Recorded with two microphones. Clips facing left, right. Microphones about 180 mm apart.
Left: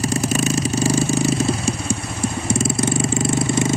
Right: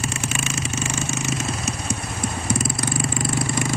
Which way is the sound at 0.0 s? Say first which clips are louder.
Left 8 dB; 40° left (ahead or behind).